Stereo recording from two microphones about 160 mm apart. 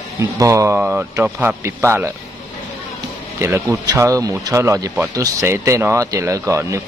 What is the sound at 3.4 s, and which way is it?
Speech, 15° right (ahead or behind).